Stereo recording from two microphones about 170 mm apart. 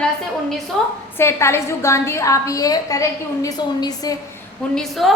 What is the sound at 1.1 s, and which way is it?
A woman's voice, 15° left (ahead or behind).